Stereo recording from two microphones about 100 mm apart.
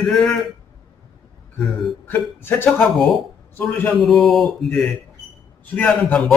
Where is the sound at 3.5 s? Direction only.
20° left (ahead or behind).